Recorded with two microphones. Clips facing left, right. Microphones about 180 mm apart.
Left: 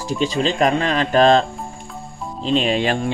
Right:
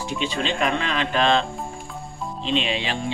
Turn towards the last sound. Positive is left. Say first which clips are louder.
# left 7 dB
turn(degrees=50)  # may be behind; listen again after turning